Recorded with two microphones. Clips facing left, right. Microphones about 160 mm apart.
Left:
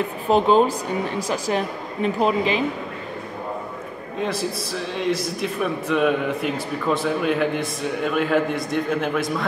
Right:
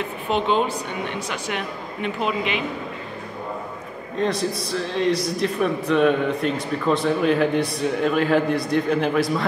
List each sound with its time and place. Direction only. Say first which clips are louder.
0.3 s speech: left 5 dB; 40° left (ahead or behind)
4.2 s a man's voice: right 2 dB; 5° left (ahead or behind)